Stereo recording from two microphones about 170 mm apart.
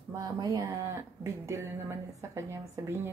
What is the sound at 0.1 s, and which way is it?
Speech, 20° right (ahead or behind).